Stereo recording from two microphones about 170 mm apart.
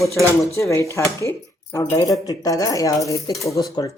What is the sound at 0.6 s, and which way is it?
Speech, 15° left (ahead or behind).